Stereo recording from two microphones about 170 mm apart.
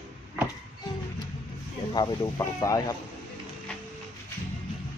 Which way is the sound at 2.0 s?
25° left (ahead or behind).